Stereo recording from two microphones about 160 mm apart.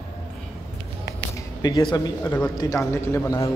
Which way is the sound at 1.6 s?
25° left (ahead or behind).